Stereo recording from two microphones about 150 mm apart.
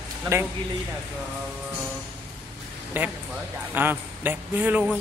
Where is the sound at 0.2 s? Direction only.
15° right (ahead or behind).